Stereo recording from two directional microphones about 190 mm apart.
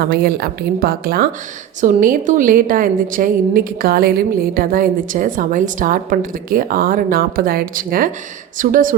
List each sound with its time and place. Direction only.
0.1 s a woman's voice: 55° right (ahead or behind)